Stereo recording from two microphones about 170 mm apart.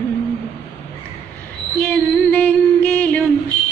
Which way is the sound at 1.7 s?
10° left (ahead or behind).